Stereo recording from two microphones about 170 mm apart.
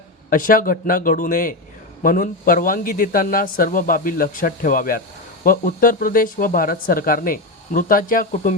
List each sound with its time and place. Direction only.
0.3 s a man's voice: 55° left (ahead or behind)